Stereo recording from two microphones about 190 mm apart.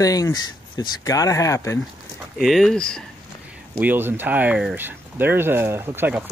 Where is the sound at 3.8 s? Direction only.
10° right (ahead or behind).